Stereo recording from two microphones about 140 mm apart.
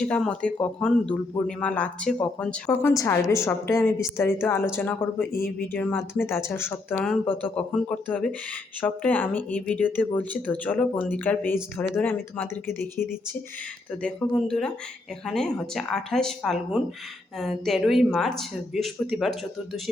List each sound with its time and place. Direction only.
0.0 s speech: 5° left (ahead or behind)
2.6 s a woman's voice: 20° left (ahead or behind)
14.0 s speech: 5° left (ahead or behind)